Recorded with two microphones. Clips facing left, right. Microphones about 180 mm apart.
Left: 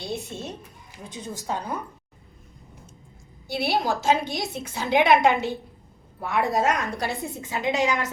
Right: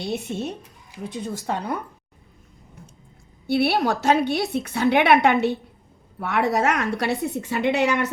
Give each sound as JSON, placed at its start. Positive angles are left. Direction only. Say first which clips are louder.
{"t": 0.1, "sound": "a woman's voice", "louder": "right 5 dB", "side_deg": -65}
{"t": 3.4, "sound": "a woman's voice", "louder": "right 5 dB", "side_deg": -60}